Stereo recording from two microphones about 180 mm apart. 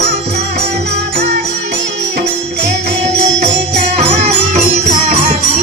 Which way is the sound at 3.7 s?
40° right (ahead or behind).